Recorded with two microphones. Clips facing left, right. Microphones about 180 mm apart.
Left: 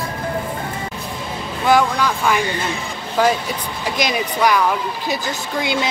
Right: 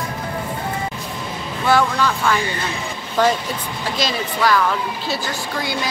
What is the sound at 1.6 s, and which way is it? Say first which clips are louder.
Speech: left 1 dB; 15° left (ahead or behind).